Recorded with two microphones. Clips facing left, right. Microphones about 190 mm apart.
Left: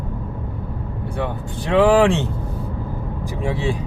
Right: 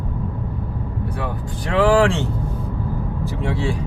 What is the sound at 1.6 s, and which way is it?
Speech, 20° left (ahead or behind).